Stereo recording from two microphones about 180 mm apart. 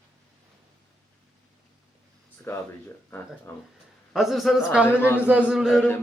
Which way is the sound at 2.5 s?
15° left (ahead or behind).